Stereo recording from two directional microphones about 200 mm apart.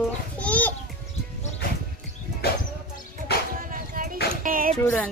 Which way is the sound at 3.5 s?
45° right (ahead or behind).